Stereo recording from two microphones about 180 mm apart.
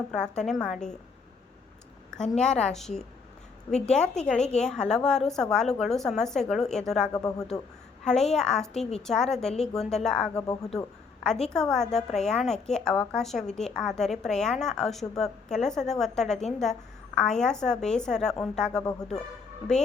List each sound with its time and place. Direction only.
0.1 s a woman's voice: 5° left (ahead or behind)
2.4 s a woman's voice: 5° left (ahead or behind)
7.2 s speech: 20° left (ahead or behind)
8.0 s a woman's voice: 5° left (ahead or behind)
10.4 s speech: 20° left (ahead or behind)
11.4 s a woman's voice: 5° left (ahead or behind)